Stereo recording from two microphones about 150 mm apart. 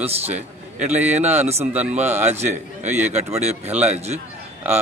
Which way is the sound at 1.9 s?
50° right (ahead or behind).